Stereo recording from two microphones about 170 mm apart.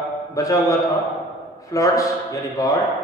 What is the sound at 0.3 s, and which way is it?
A man's voice, 20° left (ahead or behind).